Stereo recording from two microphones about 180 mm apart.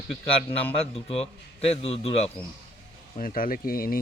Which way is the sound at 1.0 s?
35° left (ahead or behind).